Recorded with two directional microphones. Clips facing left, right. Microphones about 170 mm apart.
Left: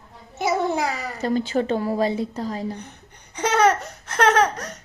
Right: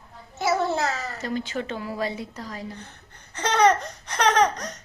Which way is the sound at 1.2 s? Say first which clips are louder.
Left 10 dB; 35° left (ahead or behind).